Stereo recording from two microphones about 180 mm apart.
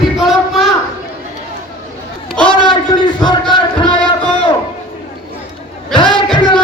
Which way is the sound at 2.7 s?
25° left (ahead or behind).